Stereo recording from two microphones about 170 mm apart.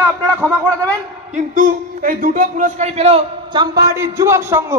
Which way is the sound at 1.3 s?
50° right (ahead or behind).